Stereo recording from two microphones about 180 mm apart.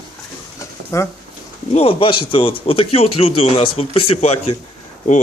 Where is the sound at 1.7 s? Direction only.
35° left (ahead or behind).